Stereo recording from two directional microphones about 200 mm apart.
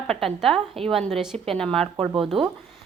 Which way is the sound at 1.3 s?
30° right (ahead or behind).